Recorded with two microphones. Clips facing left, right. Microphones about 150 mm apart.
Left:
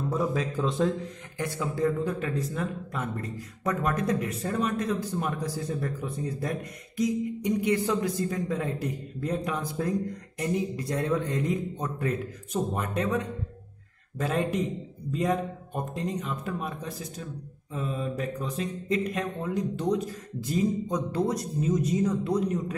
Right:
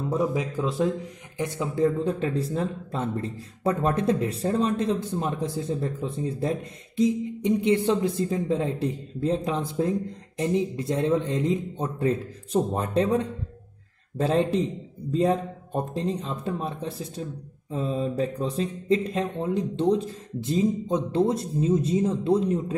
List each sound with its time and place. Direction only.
0.1 s a man's voice: 15° right (ahead or behind)
1.4 s speech: 20° right (ahead or behind)